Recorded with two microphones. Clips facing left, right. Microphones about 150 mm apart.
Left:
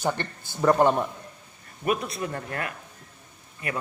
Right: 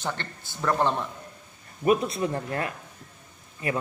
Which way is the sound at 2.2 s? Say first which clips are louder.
Right 3 dB; 25° right (ahead or behind).